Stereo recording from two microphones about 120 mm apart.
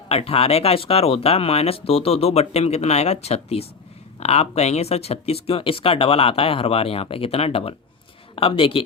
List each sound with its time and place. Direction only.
0.1 s speech: 55° left (ahead or behind)